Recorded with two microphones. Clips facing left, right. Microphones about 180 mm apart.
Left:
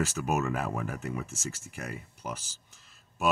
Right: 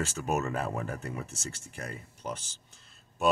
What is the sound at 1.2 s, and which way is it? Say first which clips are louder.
Speech: left 2 dB; 35° right (ahead or behind).